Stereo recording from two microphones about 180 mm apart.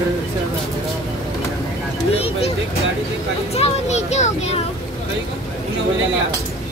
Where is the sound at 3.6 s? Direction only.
40° left (ahead or behind).